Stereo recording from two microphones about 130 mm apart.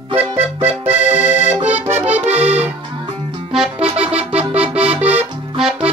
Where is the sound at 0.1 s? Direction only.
15° right (ahead or behind).